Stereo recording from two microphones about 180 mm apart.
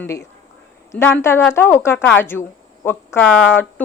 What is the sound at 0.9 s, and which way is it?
A woman's voice, 10° left (ahead or behind).